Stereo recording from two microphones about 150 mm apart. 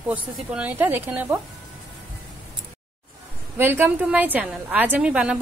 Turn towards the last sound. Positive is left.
turn(degrees=-5)  # may be behind; listen again after turning